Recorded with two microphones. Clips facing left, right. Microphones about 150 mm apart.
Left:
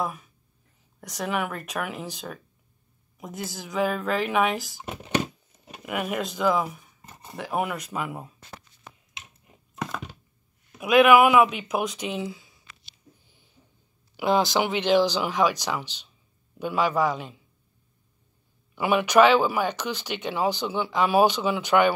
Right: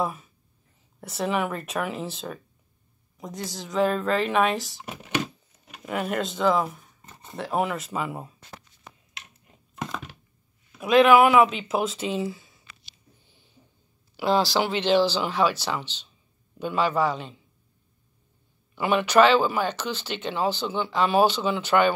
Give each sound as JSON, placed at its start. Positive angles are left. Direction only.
{"t": 0.0, "sound": "speech", "side_deg": -5}
{"t": 4.8, "sound": "a sound", "side_deg": 20}
{"t": 5.9, "sound": "speech", "side_deg": 5}
{"t": 9.8, "sound": "a sound", "side_deg": 0}
{"t": 10.8, "sound": "speech", "side_deg": 5}
{"t": 14.1, "sound": "speech", "side_deg": 15}
{"t": 18.8, "sound": "speech", "side_deg": 10}